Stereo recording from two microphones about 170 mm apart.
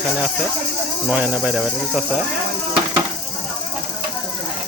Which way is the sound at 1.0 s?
10° right (ahead or behind).